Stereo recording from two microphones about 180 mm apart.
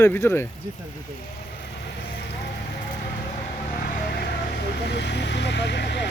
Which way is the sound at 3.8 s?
55° left (ahead or behind).